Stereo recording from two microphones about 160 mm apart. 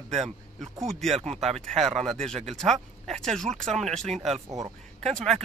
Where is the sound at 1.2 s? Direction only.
40° right (ahead or behind).